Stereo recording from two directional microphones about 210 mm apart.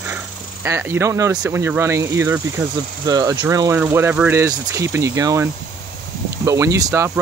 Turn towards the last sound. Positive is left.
turn(degrees=-15)  # may be behind; listen again after turning